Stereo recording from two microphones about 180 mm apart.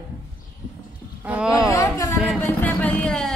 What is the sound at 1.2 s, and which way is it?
Speech, 5° right (ahead or behind).